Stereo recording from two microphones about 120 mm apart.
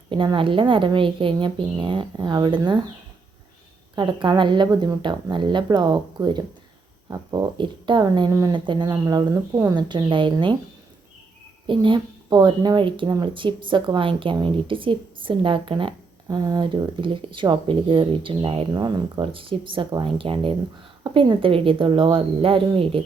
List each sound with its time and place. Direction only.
0.1 s speech: 45° right (ahead or behind)
3.9 s speech: 40° right (ahead or behind)
8.3 s speech: 30° right (ahead or behind)
8.5 s speech: 40° right (ahead or behind)
11.6 s speech: 45° right (ahead or behind)
18.7 s speech: 35° right (ahead or behind); by 23.0 s 50° right (ahead or behind)